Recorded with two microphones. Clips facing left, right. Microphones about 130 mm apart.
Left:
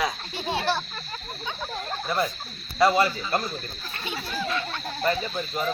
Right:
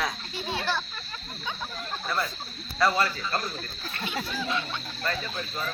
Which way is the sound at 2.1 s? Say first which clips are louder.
Left 4 dB; 15° left (ahead or behind).